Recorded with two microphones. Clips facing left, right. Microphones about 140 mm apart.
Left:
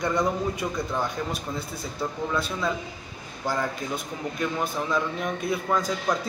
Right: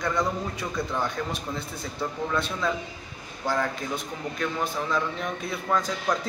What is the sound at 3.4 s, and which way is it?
Speech, 10° left (ahead or behind).